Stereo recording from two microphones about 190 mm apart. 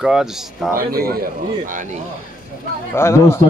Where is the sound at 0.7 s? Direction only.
50° right (ahead or behind).